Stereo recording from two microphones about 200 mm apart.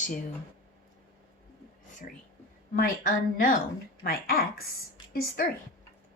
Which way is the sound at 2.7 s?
45° left (ahead or behind).